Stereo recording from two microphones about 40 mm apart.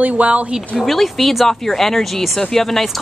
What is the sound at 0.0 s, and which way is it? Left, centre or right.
Speech, right.